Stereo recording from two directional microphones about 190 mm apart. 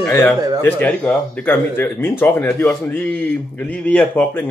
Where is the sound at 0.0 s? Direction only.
15° left (ahead or behind).